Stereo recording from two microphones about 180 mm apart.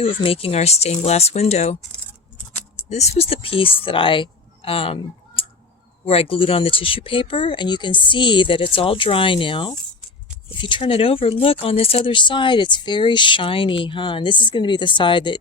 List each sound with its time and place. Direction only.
0.0 s speech: 30° left (ahead or behind)
2.9 s speech: 35° left (ahead or behind)
5.4 s tick: 30° left (ahead or behind)
6.1 s speech: 30° left (ahead or behind)